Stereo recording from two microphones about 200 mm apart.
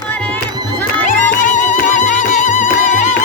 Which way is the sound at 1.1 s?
40° left (ahead or behind).